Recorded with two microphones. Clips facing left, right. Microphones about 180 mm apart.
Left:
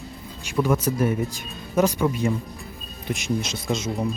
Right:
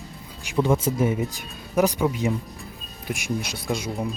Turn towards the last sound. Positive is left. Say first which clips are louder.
# left 2 dB
turn(degrees=-10)  # may be behind; listen again after turning